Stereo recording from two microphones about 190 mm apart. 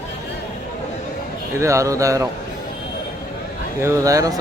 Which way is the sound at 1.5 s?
15° right (ahead or behind).